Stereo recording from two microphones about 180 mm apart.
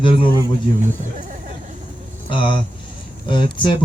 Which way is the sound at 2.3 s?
25° left (ahead or behind).